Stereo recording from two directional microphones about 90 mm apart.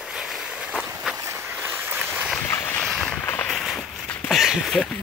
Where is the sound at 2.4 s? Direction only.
30° left (ahead or behind).